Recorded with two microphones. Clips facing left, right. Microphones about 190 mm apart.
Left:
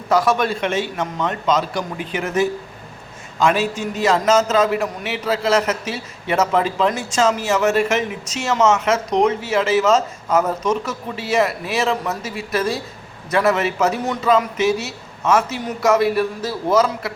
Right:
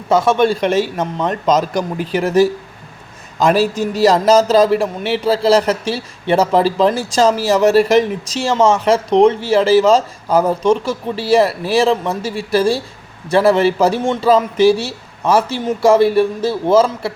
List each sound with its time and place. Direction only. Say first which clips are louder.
0.1 s a man's voice: right 4 dB; 25° right (ahead or behind)